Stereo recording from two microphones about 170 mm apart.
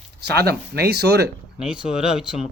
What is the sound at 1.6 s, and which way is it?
Speech, 5° right (ahead or behind).